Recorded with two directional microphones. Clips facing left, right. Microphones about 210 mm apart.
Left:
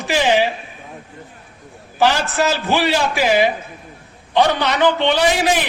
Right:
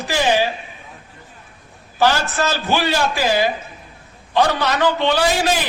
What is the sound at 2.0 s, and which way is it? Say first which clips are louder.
A man's voice: left 1 dB; 15° left (ahead or behind).